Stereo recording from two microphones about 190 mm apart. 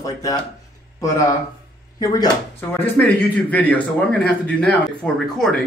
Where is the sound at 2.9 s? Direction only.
10° left (ahead or behind).